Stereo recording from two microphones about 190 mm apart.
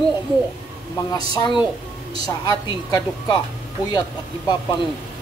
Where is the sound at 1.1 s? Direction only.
20° left (ahead or behind).